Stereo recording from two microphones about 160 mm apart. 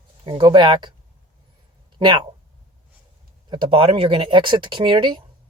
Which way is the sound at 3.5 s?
30° right (ahead or behind).